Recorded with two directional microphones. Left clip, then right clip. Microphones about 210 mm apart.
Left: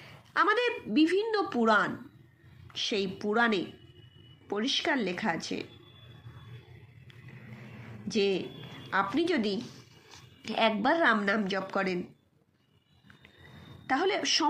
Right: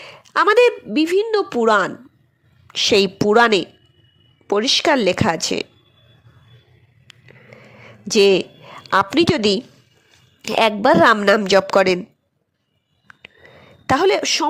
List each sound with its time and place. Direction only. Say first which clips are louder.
0.0 s a woman's voice: right 11 dB; 55° right (ahead or behind)
8.0 s a woman's voice: right 15 dB; 55° right (ahead or behind)
13.8 s a woman's voice: right 12 dB; 55° right (ahead or behind)